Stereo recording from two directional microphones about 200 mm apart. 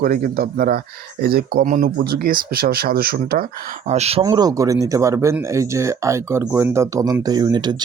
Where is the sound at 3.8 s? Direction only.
35° right (ahead or behind).